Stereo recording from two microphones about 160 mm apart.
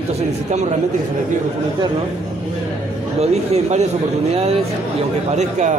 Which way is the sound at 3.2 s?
45° right (ahead or behind).